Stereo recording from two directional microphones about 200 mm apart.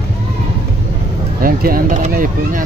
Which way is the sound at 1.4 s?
45° right (ahead or behind).